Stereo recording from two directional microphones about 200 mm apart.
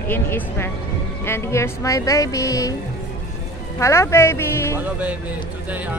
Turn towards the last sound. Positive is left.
turn(degrees=15)  # may be behind; listen again after turning